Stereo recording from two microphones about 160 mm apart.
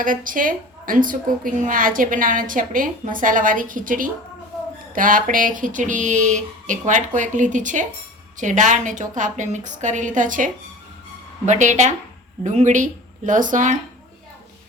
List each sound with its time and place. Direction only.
0.0 s a woman's voice: 60° right (ahead or behind)